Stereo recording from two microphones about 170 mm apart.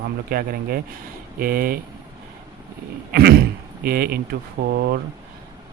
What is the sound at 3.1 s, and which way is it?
Speech, 65° right (ahead or behind).